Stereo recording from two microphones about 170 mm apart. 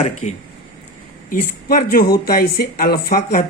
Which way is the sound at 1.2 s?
55° left (ahead or behind).